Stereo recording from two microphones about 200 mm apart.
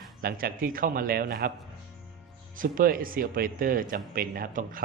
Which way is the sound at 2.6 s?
45° right (ahead or behind).